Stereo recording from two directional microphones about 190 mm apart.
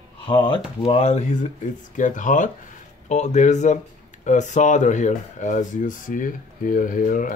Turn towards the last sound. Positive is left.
turn(degrees=45)  # may be behind; listen again after turning